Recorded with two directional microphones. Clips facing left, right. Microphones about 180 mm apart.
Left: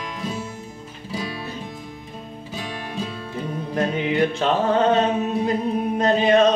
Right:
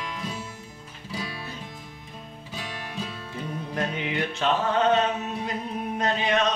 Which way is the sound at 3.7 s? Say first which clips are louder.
Left 8 dB; 35° left (ahead or behind).